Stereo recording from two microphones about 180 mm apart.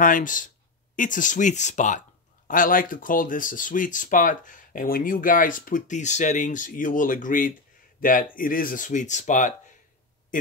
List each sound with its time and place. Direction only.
0.0 s a man's voice: 45° left (ahead or behind)